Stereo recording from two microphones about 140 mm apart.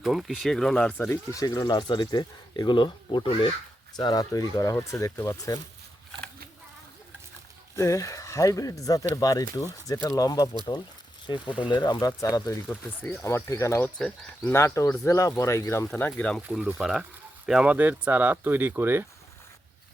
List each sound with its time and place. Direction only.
0.0 s speech: centre (ahead or behind); by 5.5 s 20° left (ahead or behind)
7.8 s speech: 20° left (ahead or behind)
11.6 s speech: 30° left (ahead or behind)
12.6 s speech: 10° left (ahead or behind)
15.9 s speech: 10° left (ahead or behind)
16.5 s speech: 5° right (ahead or behind)